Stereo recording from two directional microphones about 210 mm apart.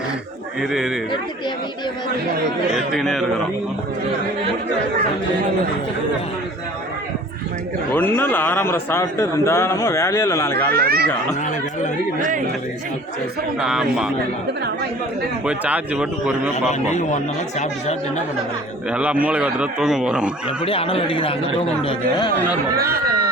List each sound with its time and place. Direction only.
0.6 s a man's voice: centre (ahead or behind)
2.7 s a man's voice: centre (ahead or behind)
7.9 s a man's voice: 10° left (ahead or behind)
10.7 s speech: 45° right (ahead or behind)
13.7 s a man's voice: centre (ahead or behind)
15.4 s speech: 5° right (ahead or behind)
16.6 s a man's voice: 35° left (ahead or behind)
18.9 s a man's voice: 5° right (ahead or behind)
20.7 s speech: 25° left (ahead or behind)
22.8 s speech: 45° right (ahead or behind)